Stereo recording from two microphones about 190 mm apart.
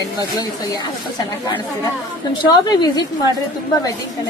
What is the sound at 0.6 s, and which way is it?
A woman's voice, 20° left (ahead or behind).